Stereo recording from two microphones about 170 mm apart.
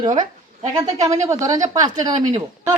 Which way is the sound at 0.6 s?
20° right (ahead or behind).